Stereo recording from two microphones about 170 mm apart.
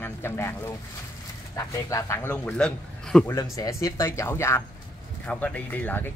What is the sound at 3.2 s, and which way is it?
Speech, 20° left (ahead or behind).